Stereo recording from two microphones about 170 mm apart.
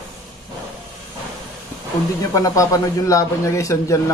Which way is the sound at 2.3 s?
20° left (ahead or behind).